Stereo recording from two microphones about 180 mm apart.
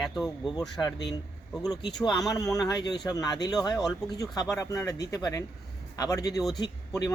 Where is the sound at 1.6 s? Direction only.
25° left (ahead or behind).